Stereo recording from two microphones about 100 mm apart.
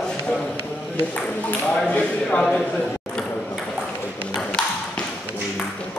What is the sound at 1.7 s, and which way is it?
Speech, 10° left (ahead or behind).